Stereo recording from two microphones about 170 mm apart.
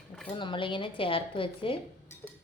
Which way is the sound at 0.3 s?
30° left (ahead or behind).